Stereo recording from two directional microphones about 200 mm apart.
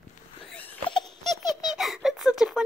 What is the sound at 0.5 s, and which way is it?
Baby laughter, 5° left (ahead or behind).